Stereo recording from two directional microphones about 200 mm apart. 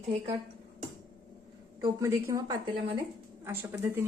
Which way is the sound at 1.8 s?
15° right (ahead or behind).